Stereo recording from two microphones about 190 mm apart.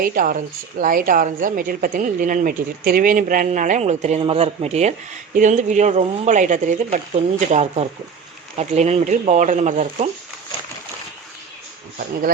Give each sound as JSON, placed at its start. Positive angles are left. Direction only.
{"t": 0.0, "sound": "a woman's voice", "side_deg": -50}